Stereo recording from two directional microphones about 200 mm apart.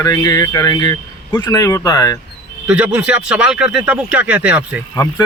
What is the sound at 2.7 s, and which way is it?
Speech, 5° right (ahead or behind).